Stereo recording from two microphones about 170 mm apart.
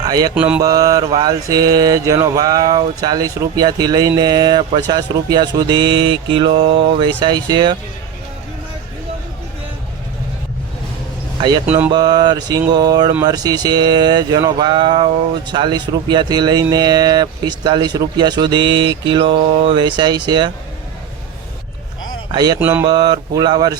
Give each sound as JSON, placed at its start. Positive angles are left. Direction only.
{"t": 0.0, "sound": "mantra", "side_deg": -20}
{"t": 0.3, "sound": "mantra", "side_deg": -10}
{"t": 0.6, "sound": "speech", "side_deg": -20}
{"t": 11.3, "sound": "speech", "side_deg": -25}
{"t": 22.3, "sound": "speech", "side_deg": -25}